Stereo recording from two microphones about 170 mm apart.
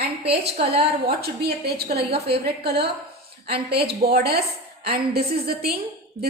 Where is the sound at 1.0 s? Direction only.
70° right (ahead or behind).